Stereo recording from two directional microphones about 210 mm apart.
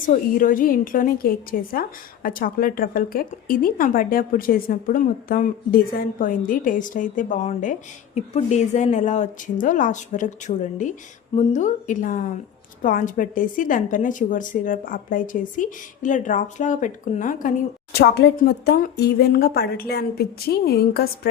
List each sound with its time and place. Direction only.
0.0 s a woman's voice: 40° left (ahead or behind)
17.9 s speech: 50° left (ahead or behind)